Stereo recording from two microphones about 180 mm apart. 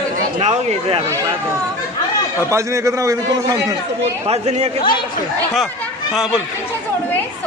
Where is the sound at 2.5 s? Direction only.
15° right (ahead or behind).